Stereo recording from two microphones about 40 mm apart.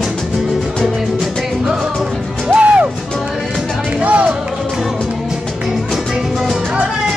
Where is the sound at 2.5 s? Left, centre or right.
Right.